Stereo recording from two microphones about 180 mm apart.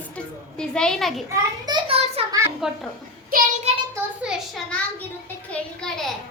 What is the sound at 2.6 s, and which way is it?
Speech, centre (ahead or behind).